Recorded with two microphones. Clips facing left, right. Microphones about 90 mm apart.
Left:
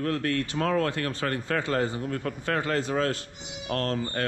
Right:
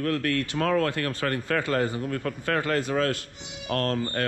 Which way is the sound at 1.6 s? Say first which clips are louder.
Right 1 dB; 25° left (ahead or behind).